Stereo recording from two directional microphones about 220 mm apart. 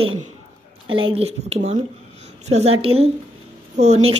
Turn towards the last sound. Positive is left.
turn(degrees=-30)  # may be behind; listen again after turning